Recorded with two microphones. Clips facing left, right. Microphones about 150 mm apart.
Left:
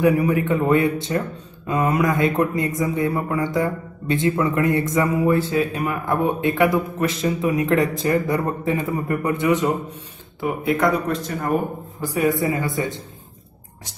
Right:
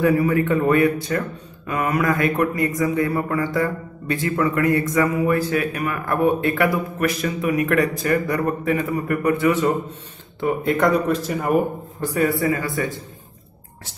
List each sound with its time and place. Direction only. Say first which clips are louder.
0.0 s speech: even; 15° left (ahead or behind)
10.4 s speech: right 1 dB; centre (ahead or behind)
12.0 s speech: even; 10° left (ahead or behind)